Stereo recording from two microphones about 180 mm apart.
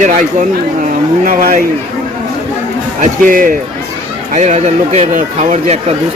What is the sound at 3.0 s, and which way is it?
Speech, 50° right (ahead or behind).